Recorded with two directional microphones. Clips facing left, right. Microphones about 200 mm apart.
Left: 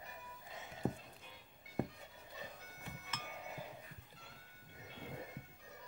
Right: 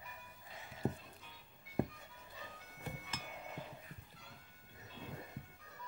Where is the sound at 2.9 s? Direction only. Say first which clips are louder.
Right 4 dB; 35° right (ahead or behind).